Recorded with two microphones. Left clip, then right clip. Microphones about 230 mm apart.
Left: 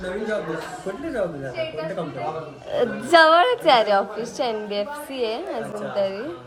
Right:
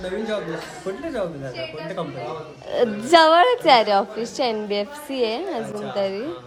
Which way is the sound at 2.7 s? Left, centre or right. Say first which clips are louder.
Right 1 dB; centre.